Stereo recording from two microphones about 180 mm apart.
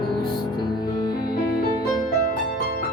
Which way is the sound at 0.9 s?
25° left (ahead or behind).